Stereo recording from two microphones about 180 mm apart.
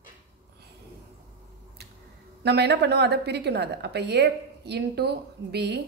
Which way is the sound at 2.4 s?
70° right (ahead or behind).